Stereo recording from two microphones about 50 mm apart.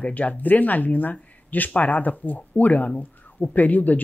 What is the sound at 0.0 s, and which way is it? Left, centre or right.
A woman's voice, left.